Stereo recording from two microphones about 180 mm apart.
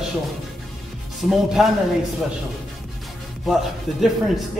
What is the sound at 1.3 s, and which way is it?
Speech, centre (ahead or behind).